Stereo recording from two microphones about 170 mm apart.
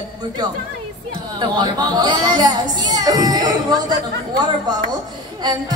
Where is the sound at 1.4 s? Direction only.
25° right (ahead or behind).